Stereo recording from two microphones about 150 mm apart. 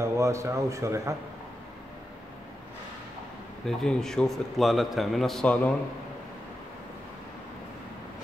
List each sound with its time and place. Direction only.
0.0 s speech: 20° right (ahead or behind)
3.6 s a man's voice: 5° left (ahead or behind)